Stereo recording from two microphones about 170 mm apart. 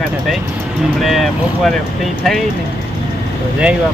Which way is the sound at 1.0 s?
Centre (ahead or behind).